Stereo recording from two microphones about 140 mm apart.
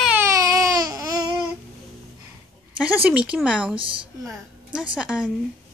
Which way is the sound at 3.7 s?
40° right (ahead or behind).